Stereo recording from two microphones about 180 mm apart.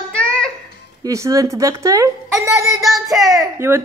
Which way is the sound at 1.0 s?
20° right (ahead or behind).